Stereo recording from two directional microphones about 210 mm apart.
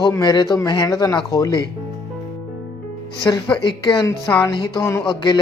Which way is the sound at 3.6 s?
20° left (ahead or behind).